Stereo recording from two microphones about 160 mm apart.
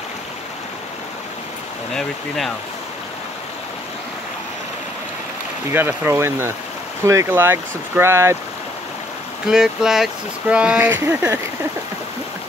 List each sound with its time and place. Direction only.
2.0 s speech: centre (ahead or behind)
5.7 s speech: 15° right (ahead or behind)
9.5 s speech: 5° right (ahead or behind)